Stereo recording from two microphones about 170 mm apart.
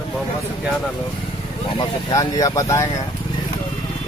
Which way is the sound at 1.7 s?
20° left (ahead or behind).